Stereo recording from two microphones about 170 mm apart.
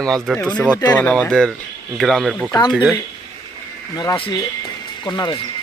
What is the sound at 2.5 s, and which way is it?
Speech, 25° left (ahead or behind).